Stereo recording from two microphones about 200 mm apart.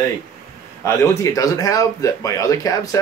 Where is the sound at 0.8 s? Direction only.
15° left (ahead or behind).